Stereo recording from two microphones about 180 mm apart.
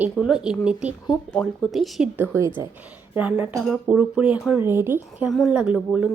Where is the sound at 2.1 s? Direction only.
10° right (ahead or behind).